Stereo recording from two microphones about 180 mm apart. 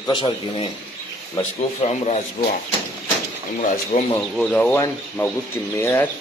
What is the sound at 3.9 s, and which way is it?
Speech, 45° left (ahead or behind).